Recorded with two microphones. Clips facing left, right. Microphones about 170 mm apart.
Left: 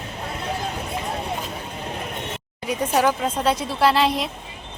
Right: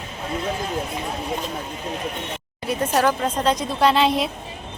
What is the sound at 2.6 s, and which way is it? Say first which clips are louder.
A woman's voice: even; 10° left (ahead or behind).